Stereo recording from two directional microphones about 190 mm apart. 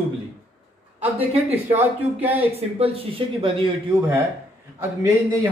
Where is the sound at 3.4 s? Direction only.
30° right (ahead or behind).